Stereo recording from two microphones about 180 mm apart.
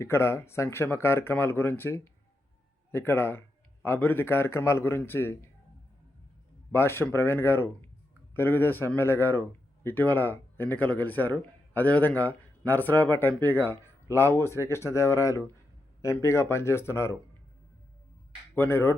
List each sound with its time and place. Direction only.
0.0 s a man's voice: 15° left (ahead or behind)
6.7 s a man's voice: 15° left (ahead or behind)
18.5 s a man's voice: 15° left (ahead or behind)